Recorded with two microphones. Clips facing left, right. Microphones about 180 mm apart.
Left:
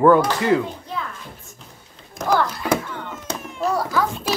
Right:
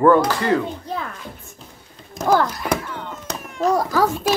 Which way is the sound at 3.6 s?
40° right (ahead or behind).